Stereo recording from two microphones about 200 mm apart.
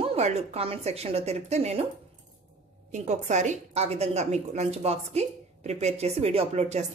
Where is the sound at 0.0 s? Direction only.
30° right (ahead or behind).